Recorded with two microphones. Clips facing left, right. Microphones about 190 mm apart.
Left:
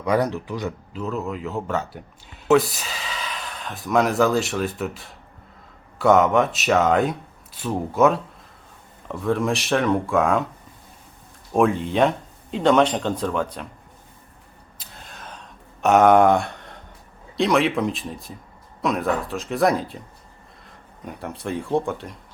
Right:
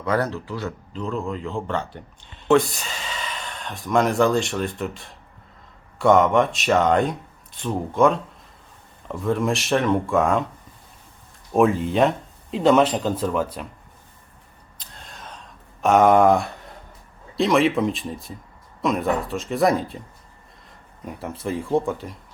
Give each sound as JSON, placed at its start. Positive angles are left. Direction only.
{"t": 0.0, "sound": "speech", "side_deg": 15}
{"t": 0.9, "sound": "speech", "side_deg": 5}
{"t": 11.5, "sound": "speech", "side_deg": 0}
{"t": 14.8, "sound": "gasp", "side_deg": 0}
{"t": 15.8, "sound": "speech", "side_deg": 0}
{"t": 21.0, "sound": "speech", "side_deg": 0}